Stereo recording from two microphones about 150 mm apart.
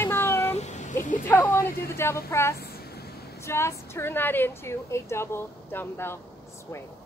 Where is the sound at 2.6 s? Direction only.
90° left.